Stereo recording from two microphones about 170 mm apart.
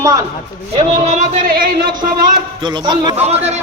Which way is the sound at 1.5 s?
65° right (ahead or behind).